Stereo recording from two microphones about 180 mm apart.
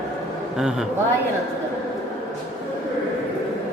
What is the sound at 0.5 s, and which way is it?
Speech, centre (ahead or behind).